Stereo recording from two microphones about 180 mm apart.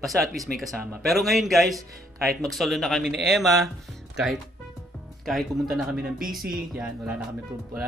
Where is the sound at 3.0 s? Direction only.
70° right (ahead or behind).